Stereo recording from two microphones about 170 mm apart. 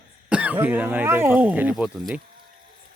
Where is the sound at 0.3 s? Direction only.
10° right (ahead or behind).